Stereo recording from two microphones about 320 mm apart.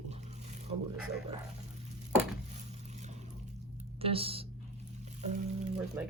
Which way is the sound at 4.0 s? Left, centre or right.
Centre.